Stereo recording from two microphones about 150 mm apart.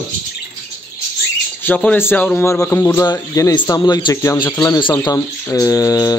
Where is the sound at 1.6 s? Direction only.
10° left (ahead or behind).